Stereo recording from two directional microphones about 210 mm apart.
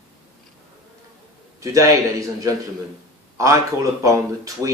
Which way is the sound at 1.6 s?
15° right (ahead or behind).